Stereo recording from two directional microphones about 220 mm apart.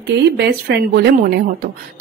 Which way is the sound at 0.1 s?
45° right (ahead or behind).